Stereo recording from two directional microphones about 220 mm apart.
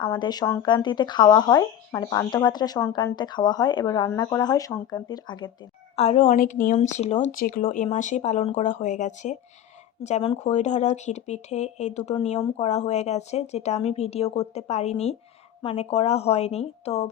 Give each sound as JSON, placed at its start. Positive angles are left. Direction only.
{"t": 0.0, "sound": "speech", "side_deg": 20}
{"t": 6.0, "sound": "speech", "side_deg": 30}